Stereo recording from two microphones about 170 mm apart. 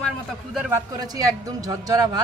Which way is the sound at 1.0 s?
20° right (ahead or behind).